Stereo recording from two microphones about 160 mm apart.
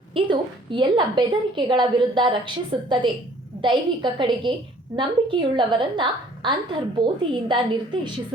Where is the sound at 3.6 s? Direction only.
30° right (ahead or behind).